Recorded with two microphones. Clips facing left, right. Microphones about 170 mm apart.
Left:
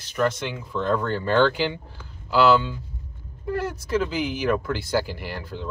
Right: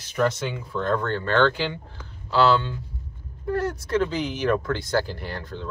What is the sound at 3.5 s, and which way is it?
Speech, 5° left (ahead or behind).